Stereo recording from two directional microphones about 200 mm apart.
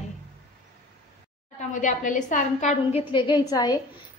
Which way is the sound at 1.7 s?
40° left (ahead or behind).